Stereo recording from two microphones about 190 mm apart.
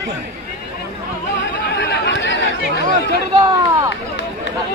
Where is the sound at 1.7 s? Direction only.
65° left (ahead or behind).